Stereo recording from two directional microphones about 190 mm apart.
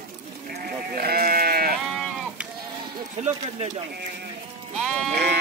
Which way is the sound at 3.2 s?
40° right (ahead or behind).